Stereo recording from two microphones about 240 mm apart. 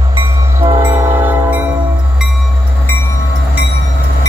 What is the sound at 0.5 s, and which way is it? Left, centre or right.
Train, centre.